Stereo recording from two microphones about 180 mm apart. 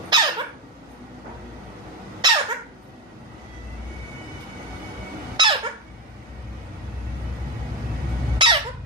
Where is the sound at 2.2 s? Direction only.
25° right (ahead or behind).